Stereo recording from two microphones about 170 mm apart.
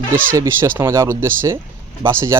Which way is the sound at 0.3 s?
15° right (ahead or behind).